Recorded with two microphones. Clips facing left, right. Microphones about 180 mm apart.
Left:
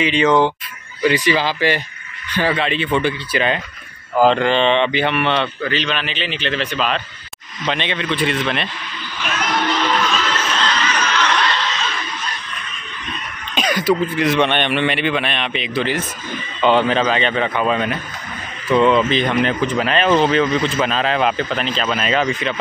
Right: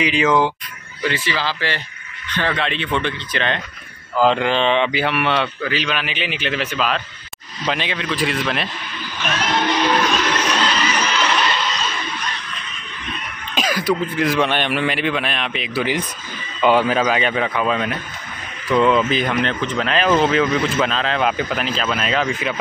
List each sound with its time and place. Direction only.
0.0 s speech: centre (ahead or behind)
1.0 s a man's voice: 15° left (ahead or behind); by 8.6 s centre (ahead or behind)
9.7 s a sound: 15° right (ahead or behind)
13.6 s speech: centre (ahead or behind)